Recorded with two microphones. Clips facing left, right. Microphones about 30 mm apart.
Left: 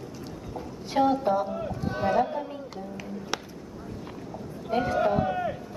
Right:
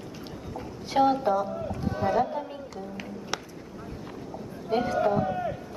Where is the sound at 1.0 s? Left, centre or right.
Centre.